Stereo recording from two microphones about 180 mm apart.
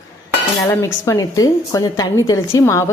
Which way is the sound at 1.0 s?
20° left (ahead or behind).